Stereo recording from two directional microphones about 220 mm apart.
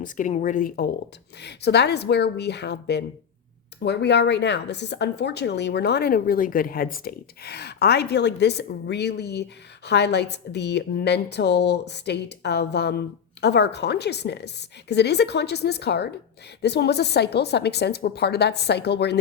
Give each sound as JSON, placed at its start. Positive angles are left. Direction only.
{"t": 0.0, "sound": "speech", "side_deg": 35}
{"t": 1.4, "sound": "a woman's voice", "side_deg": 50}